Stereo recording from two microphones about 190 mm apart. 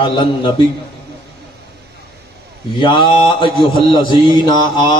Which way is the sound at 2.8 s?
25° left (ahead or behind).